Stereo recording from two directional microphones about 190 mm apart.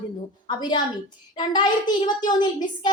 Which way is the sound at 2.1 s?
20° left (ahead or behind).